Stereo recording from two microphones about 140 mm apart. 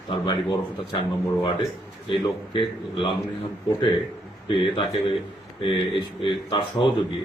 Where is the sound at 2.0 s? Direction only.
35° left (ahead or behind).